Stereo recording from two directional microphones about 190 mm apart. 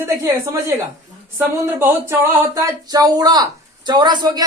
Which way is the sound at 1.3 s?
10° right (ahead or behind).